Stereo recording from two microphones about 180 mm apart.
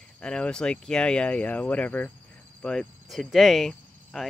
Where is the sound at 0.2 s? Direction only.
5° left (ahead or behind).